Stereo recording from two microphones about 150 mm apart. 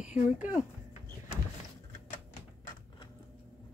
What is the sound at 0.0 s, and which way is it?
Speech, 55° left (ahead or behind).